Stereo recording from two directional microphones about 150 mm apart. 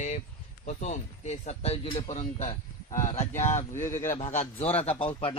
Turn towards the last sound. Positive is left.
turn(degrees=35)  # may be behind; listen again after turning